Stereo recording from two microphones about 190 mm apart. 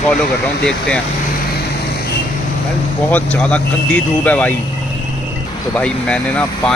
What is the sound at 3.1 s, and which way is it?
Speech, 5° left (ahead or behind).